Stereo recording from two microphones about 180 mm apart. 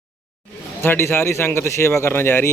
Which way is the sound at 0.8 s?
15° left (ahead or behind).